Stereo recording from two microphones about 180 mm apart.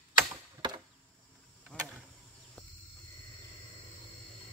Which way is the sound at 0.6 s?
25° right (ahead or behind).